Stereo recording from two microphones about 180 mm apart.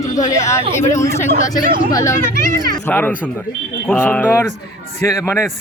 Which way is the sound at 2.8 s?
10° left (ahead or behind).